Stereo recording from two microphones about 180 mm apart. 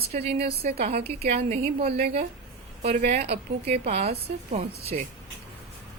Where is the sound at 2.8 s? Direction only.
40° right (ahead or behind).